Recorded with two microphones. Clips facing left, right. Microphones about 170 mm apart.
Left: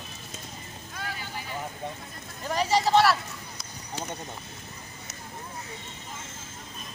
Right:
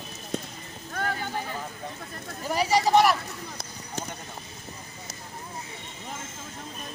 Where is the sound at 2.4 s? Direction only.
10° right (ahead or behind).